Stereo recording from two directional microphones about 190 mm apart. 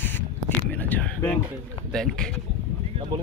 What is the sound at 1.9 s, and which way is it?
Speech, 5° left (ahead or behind).